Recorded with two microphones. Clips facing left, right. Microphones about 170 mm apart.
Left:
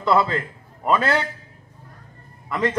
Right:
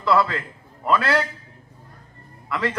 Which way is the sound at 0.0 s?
25° left (ahead or behind).